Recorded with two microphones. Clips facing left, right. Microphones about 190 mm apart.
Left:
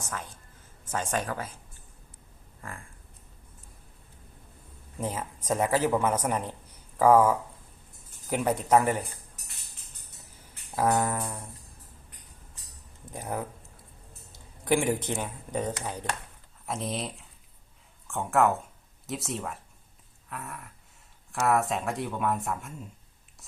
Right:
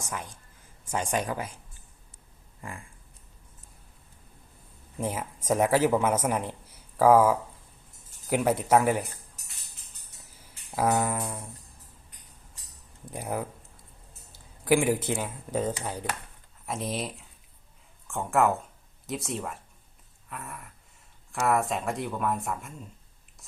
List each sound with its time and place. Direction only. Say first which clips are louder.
0.0 s a man's voice: right 1 dB; 15° right (ahead or behind)
4.9 s a man's voice: right 1 dB; 10° right (ahead or behind)
10.8 s a man's voice: even; 10° right (ahead or behind)
13.1 s a man's voice: right 2 dB; 10° right (ahead or behind)
14.3 s a sound: right 2 dB; 5° right (ahead or behind)
15.0 s speech: right 2 dB; 5° right (ahead or behind)